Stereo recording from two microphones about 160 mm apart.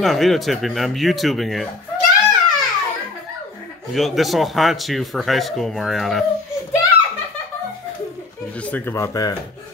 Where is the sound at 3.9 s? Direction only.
Centre (ahead or behind).